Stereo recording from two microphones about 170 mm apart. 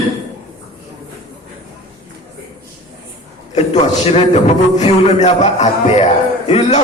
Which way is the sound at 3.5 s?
40° left (ahead or behind).